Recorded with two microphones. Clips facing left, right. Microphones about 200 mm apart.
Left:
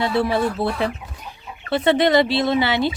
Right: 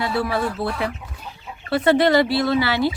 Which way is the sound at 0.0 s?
25° left (ahead or behind).